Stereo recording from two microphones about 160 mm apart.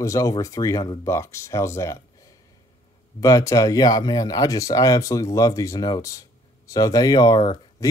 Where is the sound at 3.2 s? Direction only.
20° left (ahead or behind).